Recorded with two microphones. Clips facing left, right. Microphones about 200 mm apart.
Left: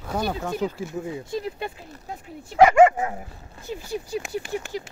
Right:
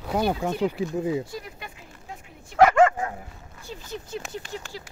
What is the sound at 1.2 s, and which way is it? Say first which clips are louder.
Speech: left 7 dB; 25° left (ahead or behind).